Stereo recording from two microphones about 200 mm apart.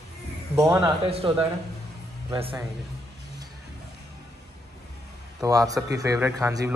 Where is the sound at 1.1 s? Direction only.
30° right (ahead or behind).